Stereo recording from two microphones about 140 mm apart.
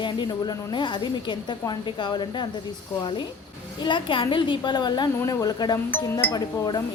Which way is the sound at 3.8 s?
35° left (ahead or behind).